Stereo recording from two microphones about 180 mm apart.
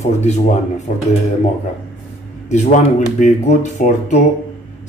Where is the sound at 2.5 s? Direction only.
40° left (ahead or behind).